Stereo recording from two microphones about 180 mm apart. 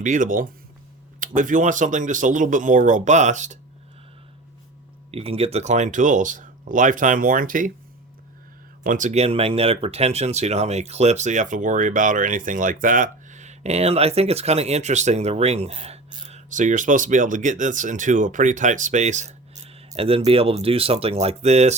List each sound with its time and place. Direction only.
0.0 s speech: 45° right (ahead or behind)
5.1 s speech: 35° right (ahead or behind); by 7.7 s 50° right (ahead or behind)
8.8 s speech: 45° right (ahead or behind)